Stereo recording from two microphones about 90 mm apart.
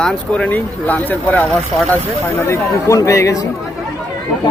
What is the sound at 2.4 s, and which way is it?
Speech, 35° left (ahead or behind).